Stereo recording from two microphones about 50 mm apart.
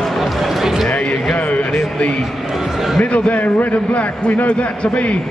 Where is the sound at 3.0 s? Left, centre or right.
Left.